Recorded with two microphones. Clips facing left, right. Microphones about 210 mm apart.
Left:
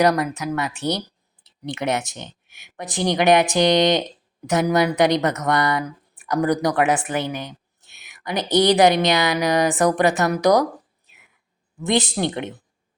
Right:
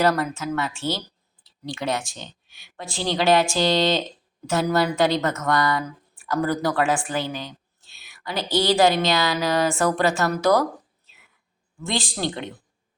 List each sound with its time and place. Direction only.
0.0 s speech: 15° left (ahead or behind)